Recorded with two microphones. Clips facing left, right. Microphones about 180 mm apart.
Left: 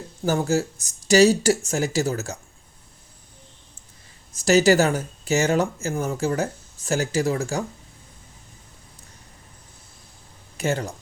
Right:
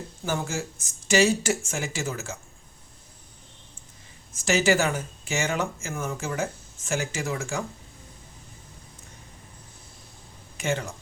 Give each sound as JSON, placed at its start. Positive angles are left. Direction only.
{"t": 0.3, "sound": "speech", "side_deg": 40}
{"t": 4.3, "sound": "speech", "side_deg": 35}
{"t": 10.6, "sound": "speech", "side_deg": 40}